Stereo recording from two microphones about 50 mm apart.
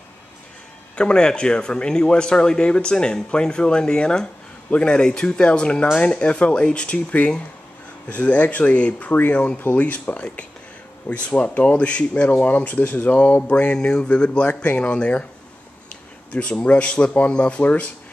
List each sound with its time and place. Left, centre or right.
0.9 s speech: centre
16.3 s speech: centre